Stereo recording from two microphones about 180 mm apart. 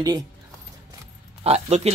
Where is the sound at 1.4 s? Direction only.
35° right (ahead or behind).